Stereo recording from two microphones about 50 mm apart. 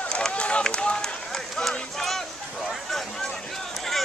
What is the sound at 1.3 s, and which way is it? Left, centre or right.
Run, centre.